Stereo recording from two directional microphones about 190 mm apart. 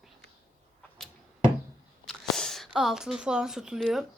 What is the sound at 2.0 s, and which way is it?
Speech, centre (ahead or behind).